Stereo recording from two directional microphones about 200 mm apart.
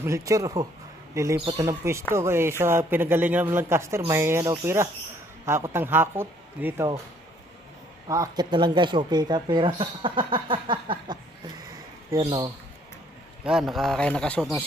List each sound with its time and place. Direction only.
0.0 s a man's voice: 15° right (ahead or behind)
8.0 s speech: 20° right (ahead or behind)
13.4 s a man's voice: centre (ahead or behind)